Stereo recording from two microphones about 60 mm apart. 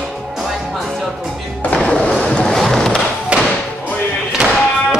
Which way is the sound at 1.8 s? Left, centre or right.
Centre.